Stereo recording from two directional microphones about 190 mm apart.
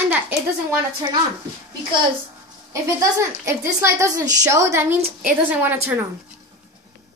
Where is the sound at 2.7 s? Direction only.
15° right (ahead or behind).